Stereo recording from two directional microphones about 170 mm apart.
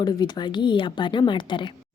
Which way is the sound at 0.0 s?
25° left (ahead or behind).